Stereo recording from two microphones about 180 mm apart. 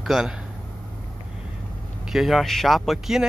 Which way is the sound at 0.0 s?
Centre (ahead or behind).